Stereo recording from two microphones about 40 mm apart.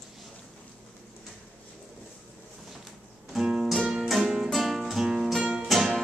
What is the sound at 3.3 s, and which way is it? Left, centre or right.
Music, centre.